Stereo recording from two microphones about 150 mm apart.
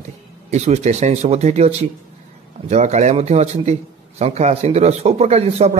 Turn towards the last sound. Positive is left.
turn(degrees=-45)  # may be behind; listen again after turning